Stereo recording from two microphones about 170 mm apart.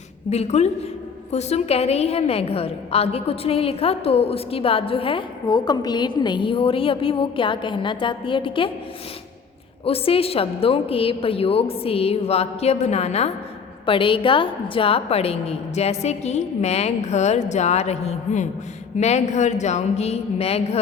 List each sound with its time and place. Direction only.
0.3 s a woman's voice: 40° left (ahead or behind)
9.8 s a woman's voice: 35° left (ahead or behind)